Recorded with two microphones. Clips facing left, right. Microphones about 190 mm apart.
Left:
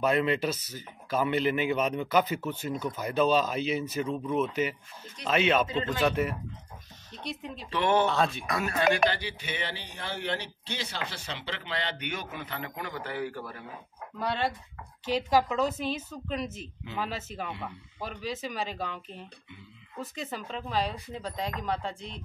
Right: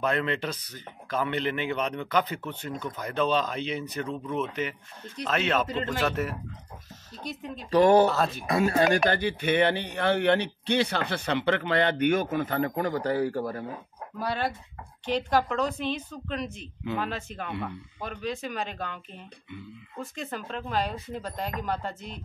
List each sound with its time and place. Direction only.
0.0 s speech: 10° left (ahead or behind)
7.2 s speech: centre (ahead or behind)
7.7 s speech: 40° right (ahead or behind)
8.1 s speech: centre (ahead or behind)
8.5 s a man's voice: 30° right (ahead or behind)
14.1 s speech: 5° right (ahead or behind)